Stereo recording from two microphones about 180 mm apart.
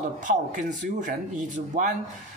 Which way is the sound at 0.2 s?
45° right (ahead or behind).